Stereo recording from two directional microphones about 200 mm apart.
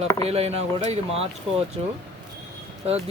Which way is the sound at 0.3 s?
30° right (ahead or behind).